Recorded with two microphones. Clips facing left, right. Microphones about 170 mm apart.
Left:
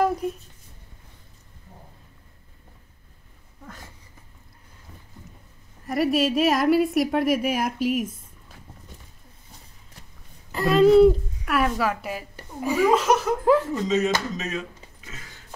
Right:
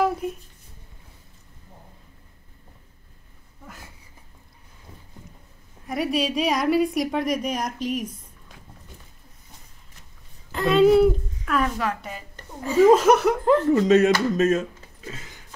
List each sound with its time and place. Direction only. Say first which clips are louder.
0.0 s a sound: even; 5° right (ahead or behind)
5.9 s a woman's voice: left 3 dB; centre (ahead or behind)
10.5 s speech: left 1 dB; centre (ahead or behind)
11.4 s a woman's voice: left 1 dB; 10° left (ahead or behind)
12.9 s speech: right 4 dB; 50° right (ahead or behind)
13.4 s speech: even; 5° left (ahead or behind)
13.7 s speech: right 6 dB; 65° right (ahead or behind)
14.3 s speech: right 10 dB; 50° right (ahead or behind)